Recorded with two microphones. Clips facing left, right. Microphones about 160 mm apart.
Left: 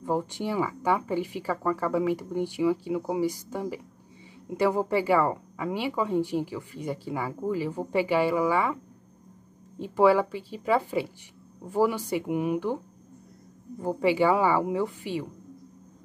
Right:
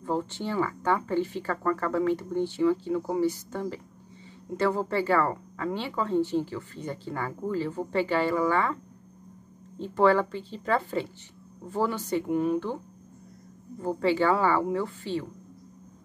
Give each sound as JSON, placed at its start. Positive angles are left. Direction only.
{"t": 0.0, "sound": "a woman's voice", "side_deg": 15}
{"t": 9.8, "sound": "a woman's voice", "side_deg": 10}
{"t": 13.7, "sound": "a woman's voice", "side_deg": 15}